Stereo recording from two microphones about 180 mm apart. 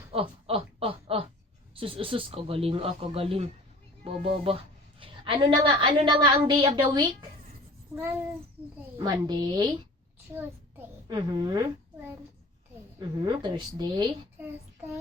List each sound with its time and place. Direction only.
0.1 s a sound: 30° right (ahead or behind)
1.7 s a woman's voice: 30° right (ahead or behind)
9.0 s a woman's voice: 20° right (ahead or behind)
10.3 s child singing: 10° right (ahead or behind)
11.1 s a woman's voice: 25° right (ahead or behind)